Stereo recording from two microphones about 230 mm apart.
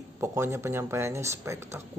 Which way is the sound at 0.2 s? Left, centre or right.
Centre.